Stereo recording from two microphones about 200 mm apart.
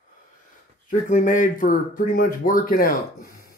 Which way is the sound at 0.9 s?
40° left (ahead or behind).